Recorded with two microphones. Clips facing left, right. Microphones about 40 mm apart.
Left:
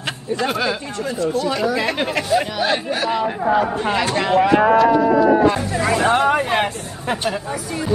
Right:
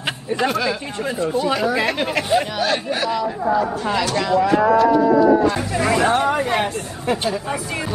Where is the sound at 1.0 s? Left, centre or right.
Right.